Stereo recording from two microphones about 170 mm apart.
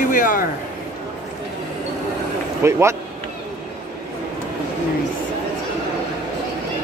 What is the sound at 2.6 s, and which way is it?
Speech, 15° right (ahead or behind).